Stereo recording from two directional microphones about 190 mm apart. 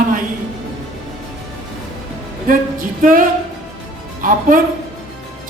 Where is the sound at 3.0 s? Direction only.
45° right (ahead or behind).